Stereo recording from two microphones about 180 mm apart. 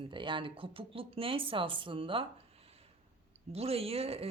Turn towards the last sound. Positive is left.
turn(degrees=-35)  # may be behind; listen again after turning